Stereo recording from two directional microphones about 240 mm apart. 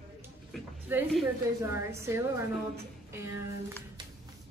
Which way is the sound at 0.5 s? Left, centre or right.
Centre.